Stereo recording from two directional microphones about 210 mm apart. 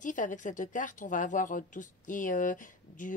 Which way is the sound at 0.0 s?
40° left (ahead or behind).